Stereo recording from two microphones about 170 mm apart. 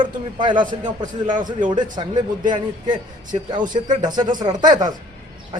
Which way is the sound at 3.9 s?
25° right (ahead or behind).